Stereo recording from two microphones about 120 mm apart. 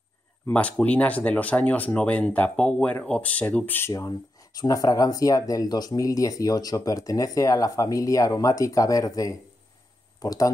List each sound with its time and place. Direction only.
0.5 s speech: 10° left (ahead or behind)
4.6 s speech: 30° left (ahead or behind)